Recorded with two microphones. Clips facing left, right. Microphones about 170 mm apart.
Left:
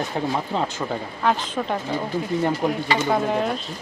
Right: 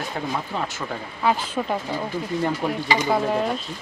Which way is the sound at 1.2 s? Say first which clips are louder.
Right 1 dB; 5° right (ahead or behind).